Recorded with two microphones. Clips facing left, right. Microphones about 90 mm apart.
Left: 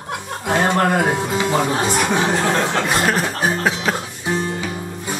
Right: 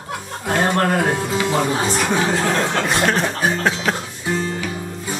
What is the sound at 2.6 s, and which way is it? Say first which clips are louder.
Chuckle: even; 5° left (ahead or behind).